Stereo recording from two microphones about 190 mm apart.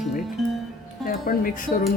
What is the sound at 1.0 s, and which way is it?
Speech, 50° left (ahead or behind).